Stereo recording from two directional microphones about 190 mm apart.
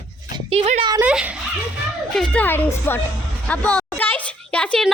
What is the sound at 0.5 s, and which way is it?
Speech, 30° right (ahead or behind).